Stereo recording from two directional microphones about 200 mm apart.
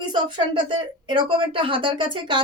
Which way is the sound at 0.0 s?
20° right (ahead or behind).